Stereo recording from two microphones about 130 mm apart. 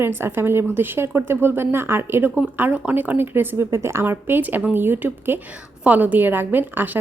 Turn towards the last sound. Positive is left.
turn(degrees=-15)  # may be behind; listen again after turning